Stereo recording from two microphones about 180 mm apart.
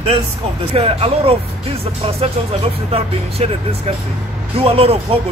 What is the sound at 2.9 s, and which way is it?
Speech, 35° right (ahead or behind).